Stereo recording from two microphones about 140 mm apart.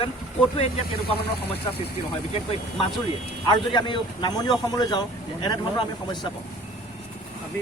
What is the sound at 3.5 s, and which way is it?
A man's voice, 35° left (ahead or behind).